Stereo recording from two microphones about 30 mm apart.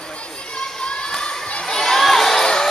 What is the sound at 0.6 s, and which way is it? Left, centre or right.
Children shouting, left.